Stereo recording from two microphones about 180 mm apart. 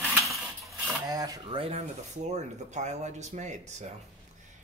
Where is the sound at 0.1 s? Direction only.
Centre (ahead or behind).